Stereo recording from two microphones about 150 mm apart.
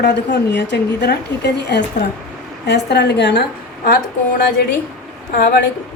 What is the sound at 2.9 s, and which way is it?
Speech, 90° left.